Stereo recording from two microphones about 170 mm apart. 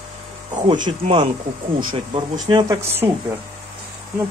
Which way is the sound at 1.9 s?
25° right (ahead or behind).